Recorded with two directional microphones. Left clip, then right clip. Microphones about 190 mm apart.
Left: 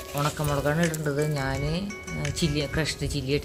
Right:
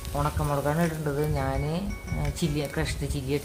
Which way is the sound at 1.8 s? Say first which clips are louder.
Left 2 dB; 30° left (ahead or behind).